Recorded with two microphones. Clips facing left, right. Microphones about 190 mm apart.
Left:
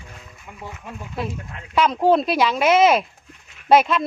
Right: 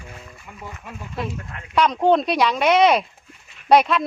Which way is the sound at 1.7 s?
5° left (ahead or behind).